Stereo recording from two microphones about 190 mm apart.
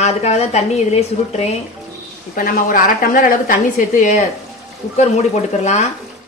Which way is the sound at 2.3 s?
50° left (ahead or behind).